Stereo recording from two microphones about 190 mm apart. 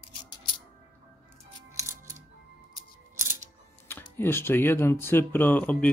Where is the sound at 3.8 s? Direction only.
10° left (ahead or behind).